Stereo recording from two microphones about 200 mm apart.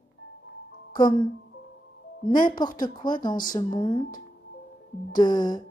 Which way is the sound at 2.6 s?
20° left (ahead or behind).